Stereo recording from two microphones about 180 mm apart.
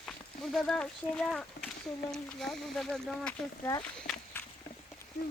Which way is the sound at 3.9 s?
5° left (ahead or behind).